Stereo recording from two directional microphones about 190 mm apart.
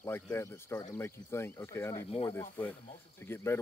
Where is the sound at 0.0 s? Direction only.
15° left (ahead or behind).